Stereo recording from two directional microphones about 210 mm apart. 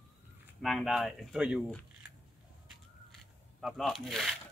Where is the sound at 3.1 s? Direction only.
Centre (ahead or behind).